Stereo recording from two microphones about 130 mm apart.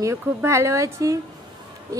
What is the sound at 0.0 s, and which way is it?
Speech, 20° right (ahead or behind).